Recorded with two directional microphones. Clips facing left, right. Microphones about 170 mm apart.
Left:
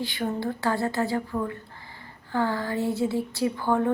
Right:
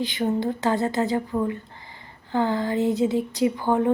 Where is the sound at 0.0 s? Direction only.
20° right (ahead or behind).